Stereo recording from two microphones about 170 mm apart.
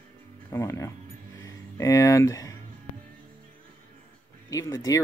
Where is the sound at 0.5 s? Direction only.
20° left (ahead or behind).